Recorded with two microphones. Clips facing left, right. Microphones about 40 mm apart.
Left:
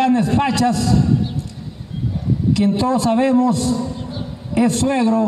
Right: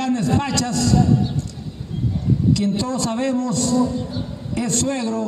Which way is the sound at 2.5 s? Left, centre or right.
Centre.